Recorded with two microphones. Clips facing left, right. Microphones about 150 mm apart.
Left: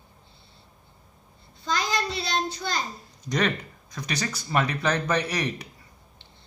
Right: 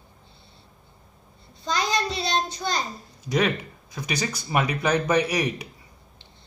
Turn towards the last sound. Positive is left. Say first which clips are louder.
# right 4 dB
turn(degrees=-10)  # may be behind; listen again after turning